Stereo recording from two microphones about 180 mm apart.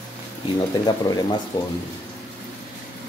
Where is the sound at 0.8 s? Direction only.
25° left (ahead or behind).